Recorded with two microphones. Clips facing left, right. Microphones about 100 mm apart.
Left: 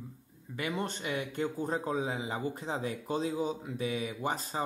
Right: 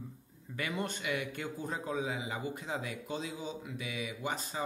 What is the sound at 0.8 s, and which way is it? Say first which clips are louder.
A man's voice: left 1 dB; 30° left (ahead or behind).